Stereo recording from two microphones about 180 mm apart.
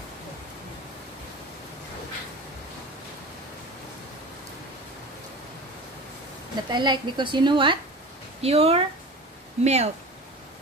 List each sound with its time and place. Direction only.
6.7 s a woman's voice: 25° right (ahead or behind)